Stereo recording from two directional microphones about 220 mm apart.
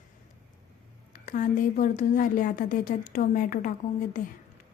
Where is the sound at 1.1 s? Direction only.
40° left (ahead or behind).